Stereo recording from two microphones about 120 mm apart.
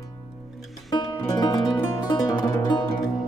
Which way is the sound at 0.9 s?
35° left (ahead or behind).